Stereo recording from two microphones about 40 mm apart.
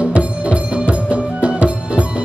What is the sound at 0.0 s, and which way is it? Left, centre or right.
Music, right.